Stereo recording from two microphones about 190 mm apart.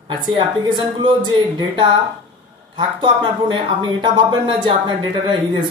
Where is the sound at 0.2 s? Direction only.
25° right (ahead or behind).